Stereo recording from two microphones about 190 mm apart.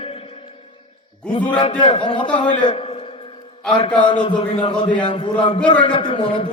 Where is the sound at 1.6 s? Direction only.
25° left (ahead or behind).